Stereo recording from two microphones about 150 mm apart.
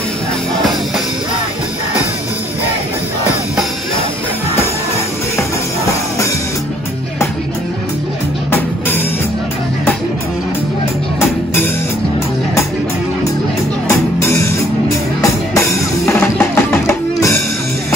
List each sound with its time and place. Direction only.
8.5 s music: 15° left (ahead or behind)
13.8 s music: 20° left (ahead or behind)
16.3 s music: 15° left (ahead or behind)